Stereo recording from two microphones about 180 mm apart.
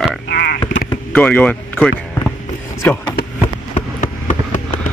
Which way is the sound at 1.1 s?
10° left (ahead or behind).